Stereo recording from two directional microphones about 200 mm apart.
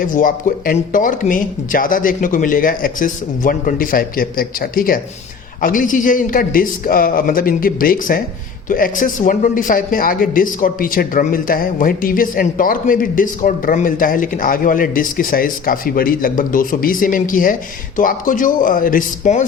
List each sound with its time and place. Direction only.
0.0 s speech: 40° left (ahead or behind)